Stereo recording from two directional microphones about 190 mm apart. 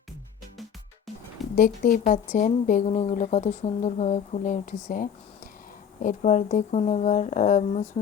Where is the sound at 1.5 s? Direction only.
50° left (ahead or behind).